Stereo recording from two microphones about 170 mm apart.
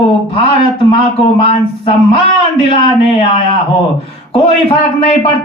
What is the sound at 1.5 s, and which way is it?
A man's voice, 30° left (ahead or behind).